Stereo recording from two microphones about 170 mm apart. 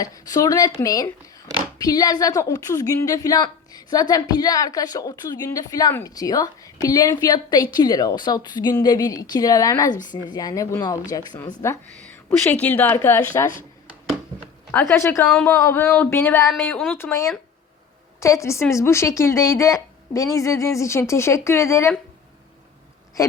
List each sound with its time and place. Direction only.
0.0 s a woman's voice: 20° left (ahead or behind)
14.7 s speech: 15° left (ahead or behind)
23.2 s a woman's voice: 20° left (ahead or behind)